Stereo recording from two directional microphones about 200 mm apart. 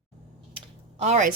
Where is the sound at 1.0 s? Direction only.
35° right (ahead or behind).